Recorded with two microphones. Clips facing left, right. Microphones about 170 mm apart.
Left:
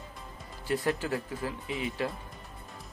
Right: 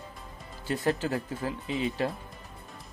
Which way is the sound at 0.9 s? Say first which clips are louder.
Right 2 dB; 35° right (ahead or behind).